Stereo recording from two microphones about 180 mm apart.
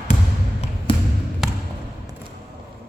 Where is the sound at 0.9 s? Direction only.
30° left (ahead or behind).